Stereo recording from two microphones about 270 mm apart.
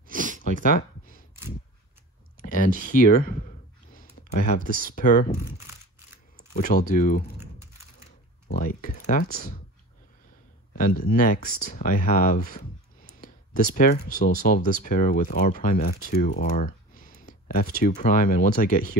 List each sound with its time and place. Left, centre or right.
0.1 s a sound: right
0.4 s a sound: left
2.4 s clicking: left
4.8 s speech: left
6.5 s speech: left
10.8 s speech: left